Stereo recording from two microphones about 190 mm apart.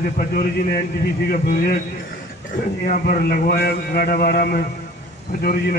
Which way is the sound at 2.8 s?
45° left (ahead or behind).